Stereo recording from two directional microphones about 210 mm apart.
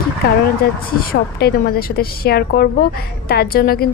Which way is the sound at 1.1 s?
50° left (ahead or behind).